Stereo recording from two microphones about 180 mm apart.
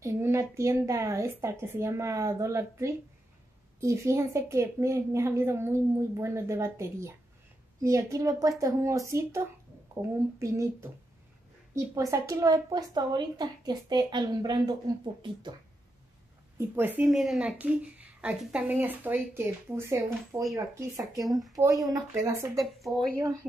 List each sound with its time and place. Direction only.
0.0 s a woman's voice: 15° right (ahead or behind)
16.5 s a woman's voice: 10° right (ahead or behind)
22.6 s speech: centre (ahead or behind)